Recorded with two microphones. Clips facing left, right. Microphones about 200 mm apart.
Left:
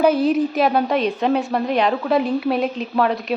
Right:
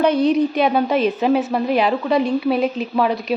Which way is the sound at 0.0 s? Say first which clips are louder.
Right 1 dB; 5° left (ahead or behind).